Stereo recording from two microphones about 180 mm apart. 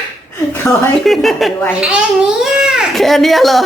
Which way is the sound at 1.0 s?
Centre (ahead or behind).